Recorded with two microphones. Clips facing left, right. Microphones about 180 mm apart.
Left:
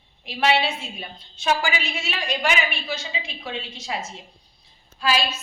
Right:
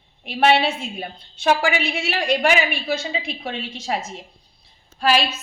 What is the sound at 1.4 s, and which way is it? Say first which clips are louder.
A woman's voice: right 4 dB; 65° right (ahead or behind).